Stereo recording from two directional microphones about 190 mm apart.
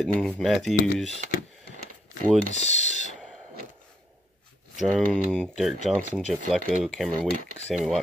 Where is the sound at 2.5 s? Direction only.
35° left (ahead or behind).